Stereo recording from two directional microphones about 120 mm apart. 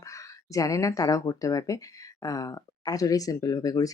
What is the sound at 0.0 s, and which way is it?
Speech, 25° left (ahead or behind).